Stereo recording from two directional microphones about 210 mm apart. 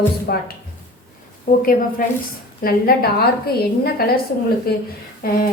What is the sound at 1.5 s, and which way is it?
A woman's voice, 40° left (ahead or behind).